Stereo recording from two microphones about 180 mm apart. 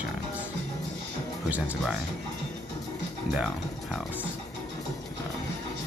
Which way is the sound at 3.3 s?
5° right (ahead or behind).